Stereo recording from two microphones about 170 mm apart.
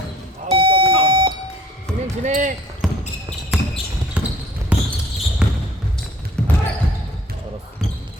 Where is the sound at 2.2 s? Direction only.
45° right (ahead or behind).